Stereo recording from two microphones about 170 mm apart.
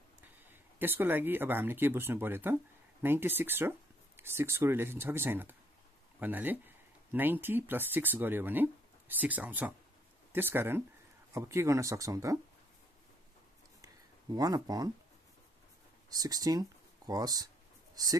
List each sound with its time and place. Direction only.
0.2 s speech: 10° right (ahead or behind)
14.3 s speech: 20° right (ahead or behind)
16.1 s speech: 20° right (ahead or behind)